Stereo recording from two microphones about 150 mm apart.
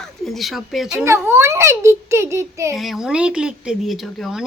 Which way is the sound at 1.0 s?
15° right (ahead or behind).